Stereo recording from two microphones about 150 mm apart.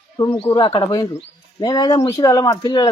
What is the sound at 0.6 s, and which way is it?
Speech, 35° left (ahead or behind).